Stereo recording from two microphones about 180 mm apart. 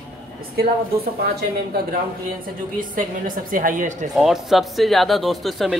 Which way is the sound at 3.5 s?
50° right (ahead or behind).